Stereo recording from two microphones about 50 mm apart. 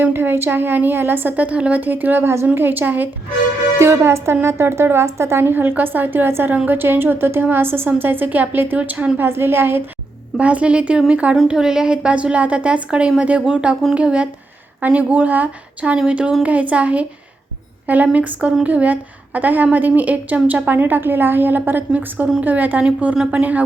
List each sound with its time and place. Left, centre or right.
0.0 s speech: right
1.4 s a woman's voice: right
2.2 s speech: right
2.6 s a woman's voice: right
3.8 s a woman's voice: right
9.1 s speech: right
10.3 s a woman's voice: right
11.4 s a woman's voice: centre; by 21.6 s right
22.4 s a woman's voice: right